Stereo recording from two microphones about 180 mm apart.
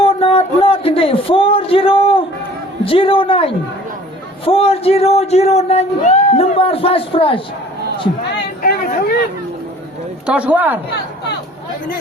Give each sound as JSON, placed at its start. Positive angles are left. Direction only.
{"t": 0.0, "sound": "music", "side_deg": 30}
{"t": 2.8, "sound": "a man's voice", "side_deg": 30}
{"t": 8.6, "sound": "a sound", "side_deg": 55}
{"t": 10.2, "sound": "speech", "side_deg": -5}